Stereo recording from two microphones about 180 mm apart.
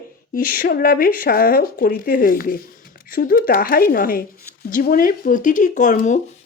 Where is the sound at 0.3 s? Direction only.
55° left (ahead or behind).